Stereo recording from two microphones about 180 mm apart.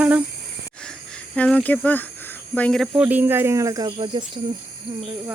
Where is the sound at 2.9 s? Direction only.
10° right (ahead or behind); by 4.2 s 25° right (ahead or behind).